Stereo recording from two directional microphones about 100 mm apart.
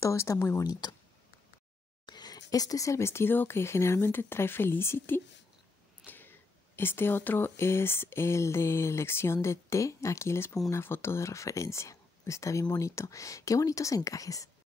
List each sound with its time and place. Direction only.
0.0 s speech: 30° left (ahead or behind)
0.7 s speech: 45° left (ahead or behind)
2.0 s speech: 45° left (ahead or behind); by 5.2 s 20° left (ahead or behind)
6.8 s speech: 20° left (ahead or behind)